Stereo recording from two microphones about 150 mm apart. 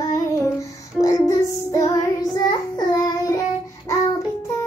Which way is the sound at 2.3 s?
25° left (ahead or behind).